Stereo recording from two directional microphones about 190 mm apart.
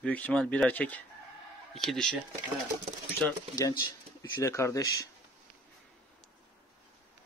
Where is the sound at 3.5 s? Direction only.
15° left (ahead or behind).